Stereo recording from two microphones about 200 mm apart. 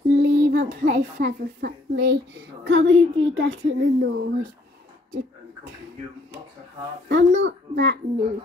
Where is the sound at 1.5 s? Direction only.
55° right (ahead or behind).